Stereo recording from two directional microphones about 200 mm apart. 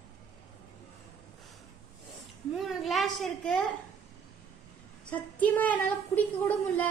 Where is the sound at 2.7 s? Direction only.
Centre (ahead or behind).